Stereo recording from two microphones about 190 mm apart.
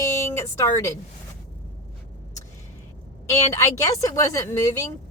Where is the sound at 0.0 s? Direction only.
15° left (ahead or behind).